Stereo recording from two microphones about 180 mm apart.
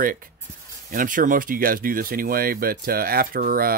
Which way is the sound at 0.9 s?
45° right (ahead or behind).